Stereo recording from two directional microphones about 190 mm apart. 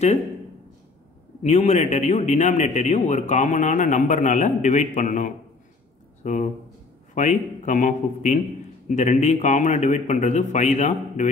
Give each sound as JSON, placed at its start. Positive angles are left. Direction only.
{"t": 1.4, "sound": "a man's voice", "side_deg": 35}